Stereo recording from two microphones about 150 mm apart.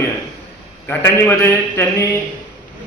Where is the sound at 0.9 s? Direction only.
15° left (ahead or behind).